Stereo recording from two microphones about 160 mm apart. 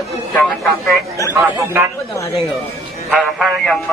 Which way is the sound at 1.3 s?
15° right (ahead or behind).